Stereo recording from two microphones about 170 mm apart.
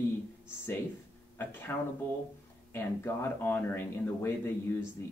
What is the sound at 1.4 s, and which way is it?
Speech, 10° left (ahead or behind).